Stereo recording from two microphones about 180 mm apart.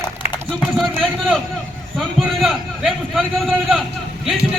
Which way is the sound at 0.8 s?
Centre (ahead or behind).